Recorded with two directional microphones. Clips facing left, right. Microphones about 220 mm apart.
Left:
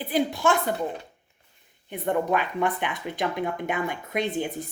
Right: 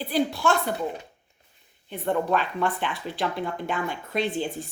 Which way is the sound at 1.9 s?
15° left (ahead or behind).